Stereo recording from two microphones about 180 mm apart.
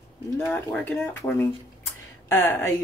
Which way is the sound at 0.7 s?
10° left (ahead or behind).